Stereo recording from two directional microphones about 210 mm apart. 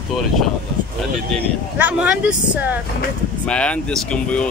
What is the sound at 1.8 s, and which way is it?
Speech, 5° right (ahead or behind).